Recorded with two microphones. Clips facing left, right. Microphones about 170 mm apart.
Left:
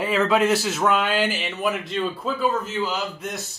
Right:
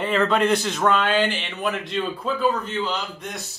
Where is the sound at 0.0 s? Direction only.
5° left (ahead or behind).